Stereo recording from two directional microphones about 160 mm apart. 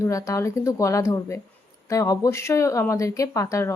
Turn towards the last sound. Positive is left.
turn(degrees=20)  # may be behind; listen again after turning